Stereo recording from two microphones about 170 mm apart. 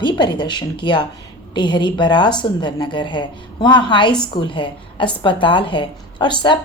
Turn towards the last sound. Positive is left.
turn(degrees=25)  # may be behind; listen again after turning